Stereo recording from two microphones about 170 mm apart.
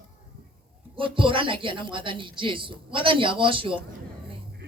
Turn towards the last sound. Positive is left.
turn(degrees=-30)  # may be behind; listen again after turning